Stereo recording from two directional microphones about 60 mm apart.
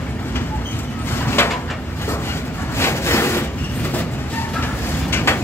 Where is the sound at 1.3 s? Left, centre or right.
Left.